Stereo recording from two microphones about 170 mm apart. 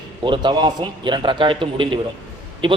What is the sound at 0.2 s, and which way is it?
A man's voice, 25° right (ahead or behind).